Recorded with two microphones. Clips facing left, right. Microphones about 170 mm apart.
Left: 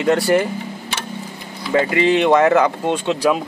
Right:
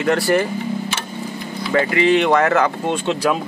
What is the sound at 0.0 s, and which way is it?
Speech, 20° left (ahead or behind).